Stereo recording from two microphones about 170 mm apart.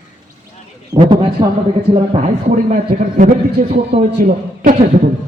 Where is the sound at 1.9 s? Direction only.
40° right (ahead or behind).